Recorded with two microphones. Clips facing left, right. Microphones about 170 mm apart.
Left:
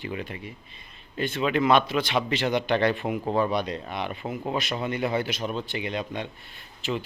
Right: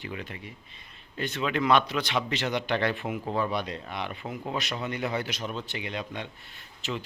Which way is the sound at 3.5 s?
15° left (ahead or behind).